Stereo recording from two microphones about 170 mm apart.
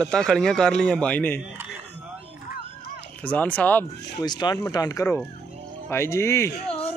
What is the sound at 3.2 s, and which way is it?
Speech, 10° left (ahead or behind).